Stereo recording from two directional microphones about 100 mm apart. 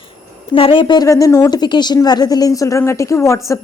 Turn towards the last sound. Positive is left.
turn(degrees=30)  # may be behind; listen again after turning